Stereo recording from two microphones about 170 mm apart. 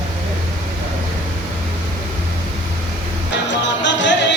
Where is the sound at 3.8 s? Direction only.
90° left.